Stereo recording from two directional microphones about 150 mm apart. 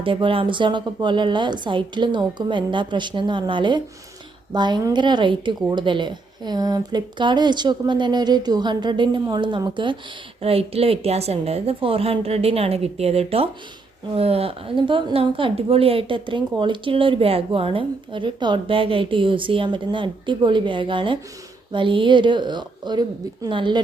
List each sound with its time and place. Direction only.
0.0 s a woman's voice: 35° right (ahead or behind)